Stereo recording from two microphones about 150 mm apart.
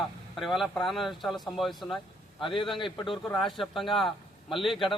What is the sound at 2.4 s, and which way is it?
Speech, 35° left (ahead or behind).